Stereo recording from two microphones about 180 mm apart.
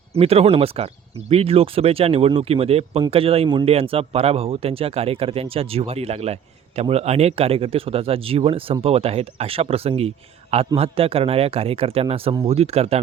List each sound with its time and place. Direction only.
0.1 s speech: 35° right (ahead or behind)